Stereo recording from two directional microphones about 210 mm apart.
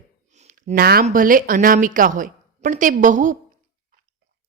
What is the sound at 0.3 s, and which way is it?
Speech, 35° right (ahead or behind).